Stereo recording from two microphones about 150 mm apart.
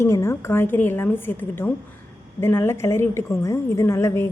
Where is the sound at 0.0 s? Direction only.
20° left (ahead or behind).